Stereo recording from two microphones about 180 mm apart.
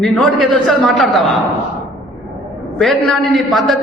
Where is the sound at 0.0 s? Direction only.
Centre (ahead or behind).